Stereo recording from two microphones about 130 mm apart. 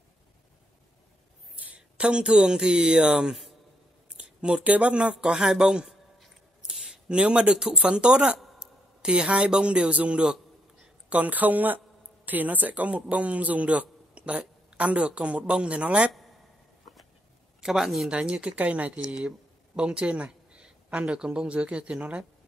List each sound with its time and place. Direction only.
1.6 s speech: 10° right (ahead or behind)
17.6 s speech: 5° right (ahead or behind)